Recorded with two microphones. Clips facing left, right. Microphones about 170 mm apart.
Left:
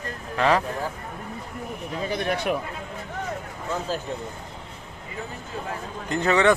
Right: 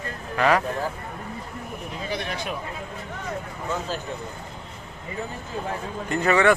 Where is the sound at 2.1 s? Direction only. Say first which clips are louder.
Left 5 dB; 50° left (ahead or behind).